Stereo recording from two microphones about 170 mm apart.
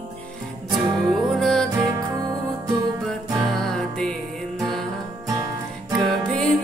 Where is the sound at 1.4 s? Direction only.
5° left (ahead or behind).